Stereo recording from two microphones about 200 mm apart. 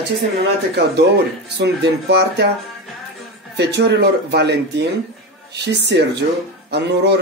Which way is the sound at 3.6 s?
60° right (ahead or behind).